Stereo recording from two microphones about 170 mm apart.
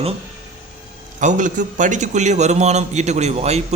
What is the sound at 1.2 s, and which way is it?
A man's voice, 50° right (ahead or behind).